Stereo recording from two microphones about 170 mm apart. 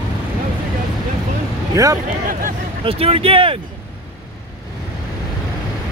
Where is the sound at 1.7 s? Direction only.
20° right (ahead or behind).